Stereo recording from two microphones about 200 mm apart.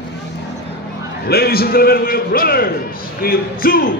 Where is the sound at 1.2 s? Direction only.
50° left (ahead or behind).